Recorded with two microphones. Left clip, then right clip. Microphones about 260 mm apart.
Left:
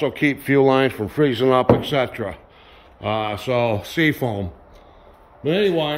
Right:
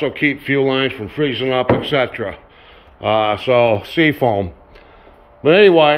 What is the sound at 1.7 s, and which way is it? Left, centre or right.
Speech, centre.